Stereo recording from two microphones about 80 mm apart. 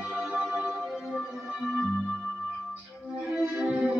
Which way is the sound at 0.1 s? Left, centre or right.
Centre.